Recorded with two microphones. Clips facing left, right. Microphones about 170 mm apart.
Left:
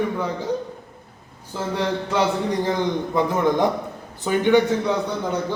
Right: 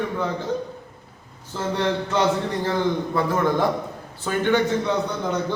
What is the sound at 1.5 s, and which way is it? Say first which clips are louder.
A man's voice: right 1 dB; 10° left (ahead or behind).